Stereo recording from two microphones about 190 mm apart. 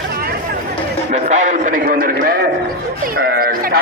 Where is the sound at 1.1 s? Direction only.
40° right (ahead or behind).